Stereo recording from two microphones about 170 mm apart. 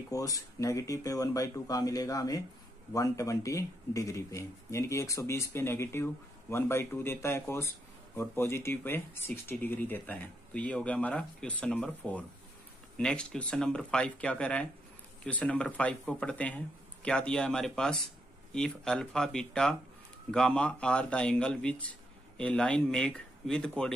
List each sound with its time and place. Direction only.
0.1 s speech: 20° left (ahead or behind); by 23.9 s 5° left (ahead or behind)